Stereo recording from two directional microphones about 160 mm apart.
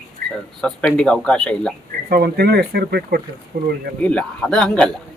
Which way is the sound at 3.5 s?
75° right (ahead or behind).